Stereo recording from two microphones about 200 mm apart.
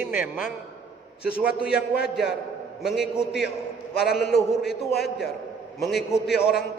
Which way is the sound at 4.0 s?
50° left (ahead or behind).